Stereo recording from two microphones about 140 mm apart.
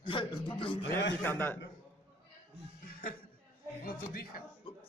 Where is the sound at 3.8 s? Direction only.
90° left.